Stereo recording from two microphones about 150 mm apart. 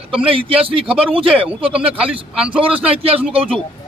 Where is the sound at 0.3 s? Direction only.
40° right (ahead or behind).